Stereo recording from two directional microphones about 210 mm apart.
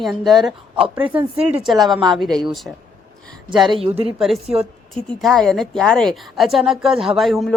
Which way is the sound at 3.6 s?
25° right (ahead or behind).